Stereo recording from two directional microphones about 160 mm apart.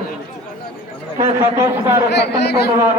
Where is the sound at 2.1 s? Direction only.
90° left.